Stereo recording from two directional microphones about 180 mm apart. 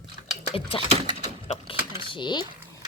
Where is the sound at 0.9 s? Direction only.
25° right (ahead or behind).